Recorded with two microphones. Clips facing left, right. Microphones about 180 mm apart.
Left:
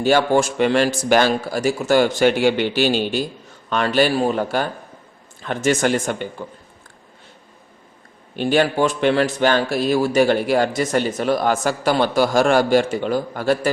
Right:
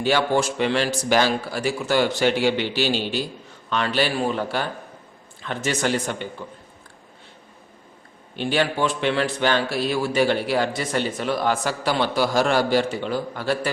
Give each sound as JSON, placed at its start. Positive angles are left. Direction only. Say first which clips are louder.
{"t": 0.0, "sound": "a man's voice", "louder": "left 4 dB", "side_deg": 45}
{"t": 8.4, "sound": "a man's voice", "louder": "left 5 dB", "side_deg": 45}